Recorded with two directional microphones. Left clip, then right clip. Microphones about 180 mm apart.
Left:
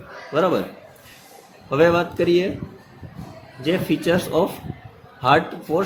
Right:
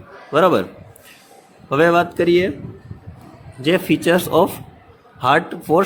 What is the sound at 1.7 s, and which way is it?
Speech, 35° right (ahead or behind).